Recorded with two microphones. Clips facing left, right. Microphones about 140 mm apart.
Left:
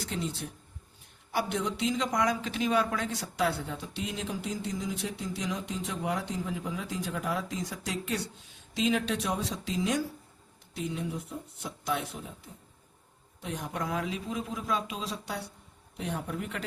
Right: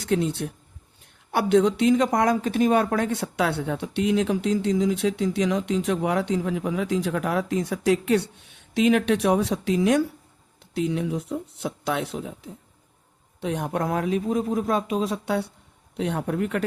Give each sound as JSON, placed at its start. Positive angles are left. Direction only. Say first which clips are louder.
{"t": 0.0, "sound": "a man's voice", "louder": "right 11 dB", "side_deg": -65}
{"t": 13.4, "sound": "a man's voice", "louder": "right 9 dB", "side_deg": -65}